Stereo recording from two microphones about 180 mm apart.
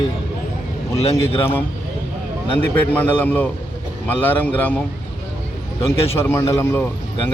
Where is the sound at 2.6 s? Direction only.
10° left (ahead or behind).